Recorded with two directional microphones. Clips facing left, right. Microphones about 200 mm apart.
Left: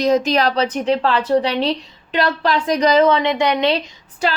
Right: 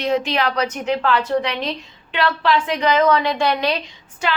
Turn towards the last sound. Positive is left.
turn(degrees=35)  # may be behind; listen again after turning